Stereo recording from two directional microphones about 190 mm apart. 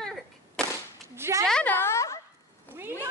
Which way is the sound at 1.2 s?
15° right (ahead or behind).